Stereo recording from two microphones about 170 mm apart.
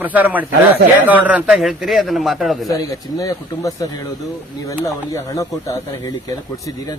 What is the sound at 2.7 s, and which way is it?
Speech, 20° left (ahead or behind).